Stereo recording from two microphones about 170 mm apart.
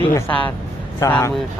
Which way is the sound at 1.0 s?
20° left (ahead or behind).